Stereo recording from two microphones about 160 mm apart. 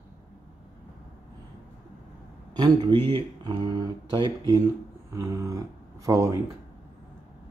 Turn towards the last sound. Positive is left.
turn(degrees=-20)  # may be behind; listen again after turning